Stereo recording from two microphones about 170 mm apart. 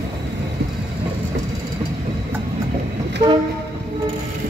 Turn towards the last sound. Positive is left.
turn(degrees=-25)  # may be behind; listen again after turning